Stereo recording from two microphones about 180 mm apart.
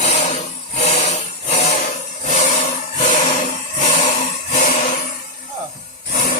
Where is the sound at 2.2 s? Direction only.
40° left (ahead or behind).